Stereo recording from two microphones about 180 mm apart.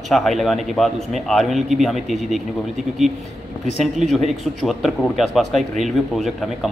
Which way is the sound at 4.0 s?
Centre (ahead or behind).